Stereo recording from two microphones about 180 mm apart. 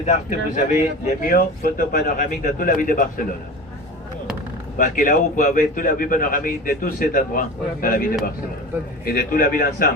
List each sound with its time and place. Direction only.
0.0 s a man's voice: 45° left (ahead or behind)
4.8 s a man's voice: 50° left (ahead or behind)